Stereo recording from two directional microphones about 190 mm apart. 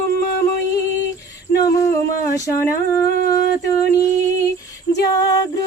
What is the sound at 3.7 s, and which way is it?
Singing, 15° left (ahead or behind).